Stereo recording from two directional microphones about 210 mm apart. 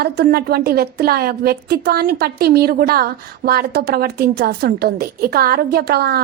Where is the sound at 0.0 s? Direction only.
45° right (ahead or behind).